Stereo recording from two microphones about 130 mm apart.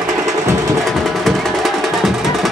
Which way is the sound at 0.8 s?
Centre (ahead or behind).